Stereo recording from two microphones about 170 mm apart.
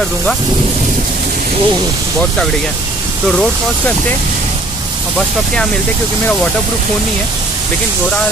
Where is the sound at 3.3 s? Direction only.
5° left (ahead or behind).